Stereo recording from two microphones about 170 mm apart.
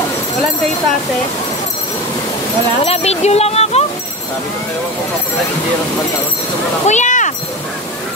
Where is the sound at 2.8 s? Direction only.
40° left (ahead or behind).